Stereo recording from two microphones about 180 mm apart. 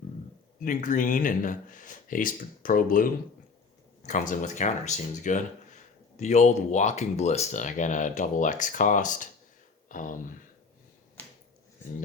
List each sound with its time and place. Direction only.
0.6 s speech: 45° left (ahead or behind)
9.9 s a sound: 45° left (ahead or behind)
11.2 s finger snapping: 5° left (ahead or behind)